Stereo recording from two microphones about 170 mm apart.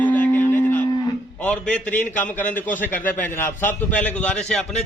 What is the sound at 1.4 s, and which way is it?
A man's voice, 5° left (ahead or behind).